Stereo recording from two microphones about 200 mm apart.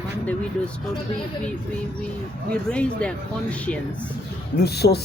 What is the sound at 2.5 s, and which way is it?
Speech, 5° left (ahead or behind).